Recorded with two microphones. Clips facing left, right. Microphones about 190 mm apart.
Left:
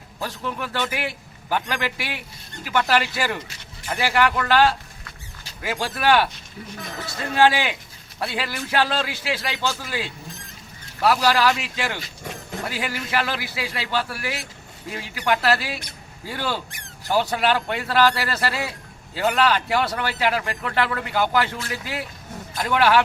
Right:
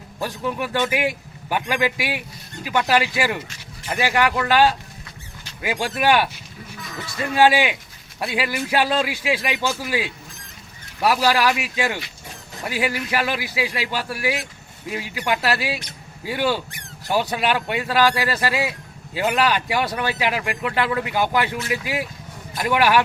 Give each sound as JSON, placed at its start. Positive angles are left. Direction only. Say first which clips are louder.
{"t": 0.2, "sound": "speech", "louder": "right 4 dB", "side_deg": -15}
{"t": 7.3, "sound": "speech", "louder": "right 2 dB", "side_deg": -15}